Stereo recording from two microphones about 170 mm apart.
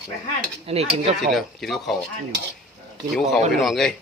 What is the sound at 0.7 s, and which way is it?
Speech, 35° right (ahead or behind).